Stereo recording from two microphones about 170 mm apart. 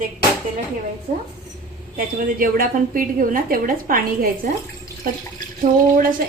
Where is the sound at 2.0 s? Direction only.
55° right (ahead or behind).